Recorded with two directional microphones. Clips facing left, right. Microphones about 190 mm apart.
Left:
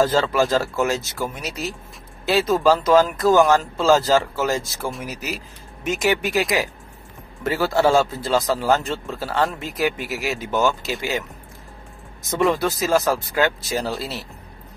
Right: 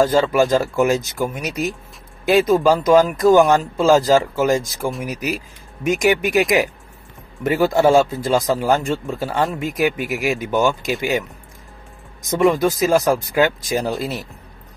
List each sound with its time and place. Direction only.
0.0 s speech: 15° right (ahead or behind)
12.5 s speech: 15° right (ahead or behind)